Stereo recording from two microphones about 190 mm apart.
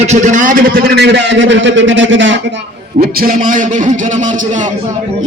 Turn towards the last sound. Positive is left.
turn(degrees=-40)  # may be behind; listen again after turning